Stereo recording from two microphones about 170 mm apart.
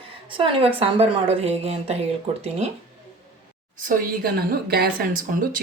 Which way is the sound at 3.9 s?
60° right (ahead or behind).